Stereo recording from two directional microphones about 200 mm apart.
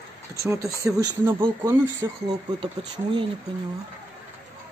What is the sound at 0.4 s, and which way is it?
Speech, 15° right (ahead or behind).